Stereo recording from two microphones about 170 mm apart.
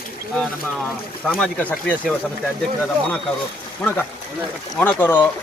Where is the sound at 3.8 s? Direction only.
10° left (ahead or behind).